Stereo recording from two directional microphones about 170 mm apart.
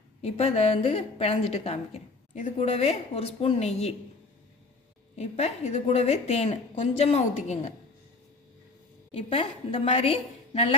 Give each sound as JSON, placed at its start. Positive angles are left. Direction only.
{"t": 0.2, "sound": "a woman's voice", "side_deg": 40}
{"t": 5.1, "sound": "a woman's voice", "side_deg": 40}
{"t": 9.1, "sound": "a woman's voice", "side_deg": 35}